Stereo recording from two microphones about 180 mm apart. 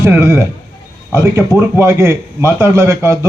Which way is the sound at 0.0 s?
15° right (ahead or behind).